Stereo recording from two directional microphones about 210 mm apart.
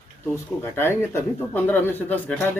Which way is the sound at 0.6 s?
10° left (ahead or behind).